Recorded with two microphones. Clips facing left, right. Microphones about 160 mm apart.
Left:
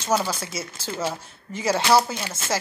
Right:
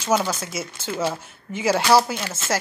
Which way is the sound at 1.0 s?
5° right (ahead or behind).